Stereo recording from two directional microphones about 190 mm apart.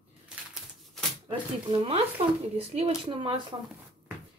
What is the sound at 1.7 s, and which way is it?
Speech, 30° right (ahead or behind).